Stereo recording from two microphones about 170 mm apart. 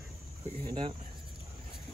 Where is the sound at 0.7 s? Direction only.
30° right (ahead or behind).